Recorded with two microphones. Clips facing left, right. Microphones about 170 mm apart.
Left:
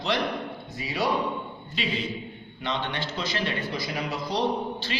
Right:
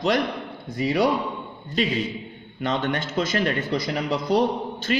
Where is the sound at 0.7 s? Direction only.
55° right (ahead or behind).